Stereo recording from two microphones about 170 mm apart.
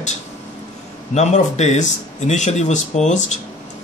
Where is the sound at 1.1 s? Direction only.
40° left (ahead or behind).